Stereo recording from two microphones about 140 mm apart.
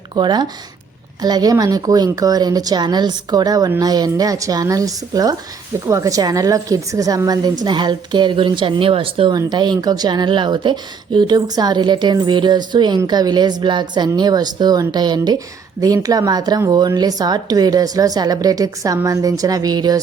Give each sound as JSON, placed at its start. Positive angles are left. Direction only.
{"t": 0.2, "sound": "speech", "side_deg": -30}